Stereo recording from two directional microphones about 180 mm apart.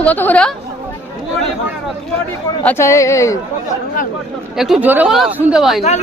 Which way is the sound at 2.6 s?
10° left (ahead or behind).